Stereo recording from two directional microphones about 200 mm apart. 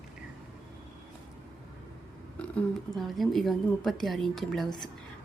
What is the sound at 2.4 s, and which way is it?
Speech, 5° left (ahead or behind).